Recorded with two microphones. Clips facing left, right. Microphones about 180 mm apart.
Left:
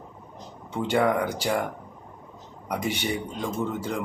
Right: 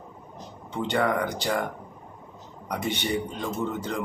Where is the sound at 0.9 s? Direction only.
10° left (ahead or behind).